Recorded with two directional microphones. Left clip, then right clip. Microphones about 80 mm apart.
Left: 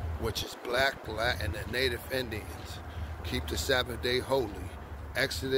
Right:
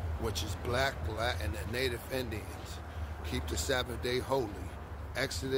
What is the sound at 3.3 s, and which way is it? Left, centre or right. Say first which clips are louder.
Speech: left 4 dB; centre.